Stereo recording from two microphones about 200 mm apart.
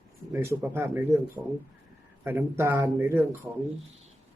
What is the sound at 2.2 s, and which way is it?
Speech, 10° right (ahead or behind).